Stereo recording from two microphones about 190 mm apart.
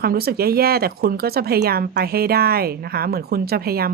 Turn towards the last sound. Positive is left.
turn(degrees=-55)  # may be behind; listen again after turning